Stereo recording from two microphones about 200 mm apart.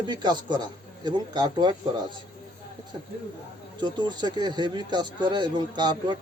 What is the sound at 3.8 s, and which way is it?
Speech, 20° right (ahead or behind).